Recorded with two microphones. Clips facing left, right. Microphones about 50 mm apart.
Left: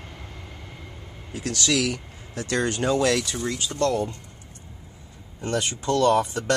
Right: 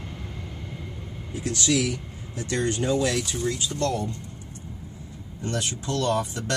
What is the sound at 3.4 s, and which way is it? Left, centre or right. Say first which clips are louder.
Speech: left 2 dB; left.